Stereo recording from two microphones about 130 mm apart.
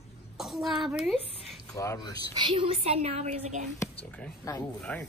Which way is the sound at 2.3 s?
40° right (ahead or behind).